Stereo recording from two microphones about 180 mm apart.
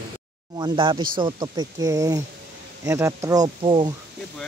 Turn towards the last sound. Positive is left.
turn(degrees=-25)  # may be behind; listen again after turning